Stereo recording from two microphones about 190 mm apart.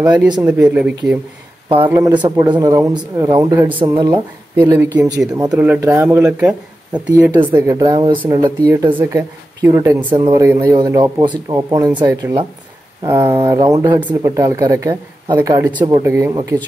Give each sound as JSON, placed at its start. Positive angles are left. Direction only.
{"t": 0.4, "sound": "speech", "side_deg": -5}
{"t": 4.6, "sound": "speech", "side_deg": -10}
{"t": 7.3, "sound": "speech", "side_deg": -20}
{"t": 10.1, "sound": "speech", "side_deg": -25}
{"t": 10.4, "sound": "speech", "side_deg": -10}
{"t": 13.9, "sound": "speech", "side_deg": -10}